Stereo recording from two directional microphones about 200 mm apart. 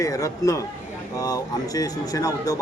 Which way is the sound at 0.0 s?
15° left (ahead or behind).